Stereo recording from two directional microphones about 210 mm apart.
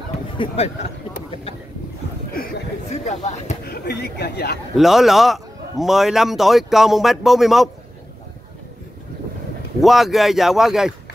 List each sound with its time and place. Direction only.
0.6 s speech: 30° left (ahead or behind)
2.3 s a sound: 40° left (ahead or behind)
3.6 s speech: 50° left (ahead or behind)
4.7 s a man's voice: centre (ahead or behind)
9.8 s a man's voice: centre (ahead or behind)